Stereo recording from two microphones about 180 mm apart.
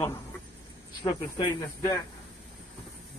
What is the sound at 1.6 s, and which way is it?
Speech, 15° left (ahead or behind).